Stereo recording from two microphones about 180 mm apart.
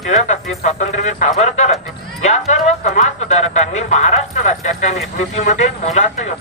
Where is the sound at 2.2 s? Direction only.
40° left (ahead or behind).